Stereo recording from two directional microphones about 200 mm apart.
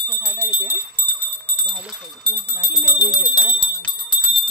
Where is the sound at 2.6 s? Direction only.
20° left (ahead or behind).